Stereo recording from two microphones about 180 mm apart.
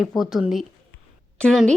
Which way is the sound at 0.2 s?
Centre (ahead or behind).